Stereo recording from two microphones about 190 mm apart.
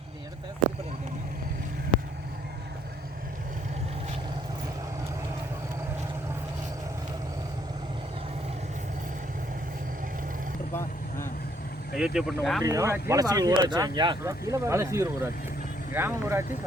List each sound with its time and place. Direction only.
11.9 s speech: 5° right (ahead or behind)
12.6 s speech: 15° right (ahead or behind)